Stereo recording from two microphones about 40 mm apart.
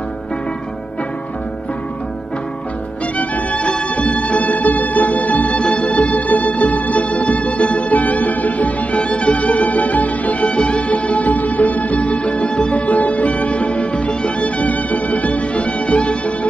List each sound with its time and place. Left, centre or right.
3.2 s music: left
5.6 s music: left
5.9 s music: left
10.5 s music: left
12.7 s music: left